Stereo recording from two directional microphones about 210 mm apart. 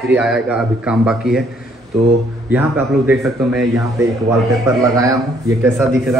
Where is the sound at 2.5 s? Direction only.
10° right (ahead or behind).